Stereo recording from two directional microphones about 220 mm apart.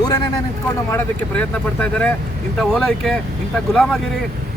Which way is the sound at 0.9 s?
5° left (ahead or behind).